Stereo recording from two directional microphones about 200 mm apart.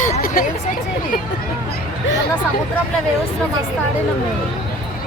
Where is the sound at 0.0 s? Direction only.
40° left (ahead or behind).